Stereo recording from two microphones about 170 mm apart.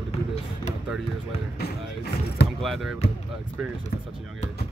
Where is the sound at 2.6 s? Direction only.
Centre (ahead or behind).